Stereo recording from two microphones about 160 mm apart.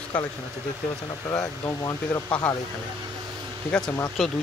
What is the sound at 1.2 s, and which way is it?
Speech, 20° left (ahead or behind).